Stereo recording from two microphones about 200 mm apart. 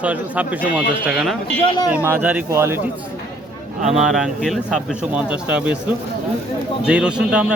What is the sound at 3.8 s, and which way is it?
Speech, 35° right (ahead or behind).